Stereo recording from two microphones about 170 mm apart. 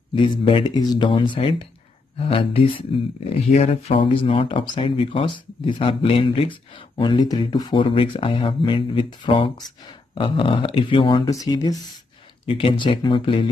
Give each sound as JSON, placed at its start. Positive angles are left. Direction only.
{"t": 0.1, "sound": "speech", "side_deg": 30}